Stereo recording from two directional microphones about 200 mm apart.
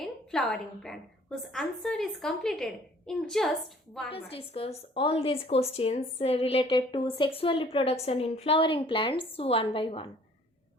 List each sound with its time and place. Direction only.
0.0 s a woman's voice: 5° left (ahead or behind)
4.1 s a woman's voice: 30° left (ahead or behind)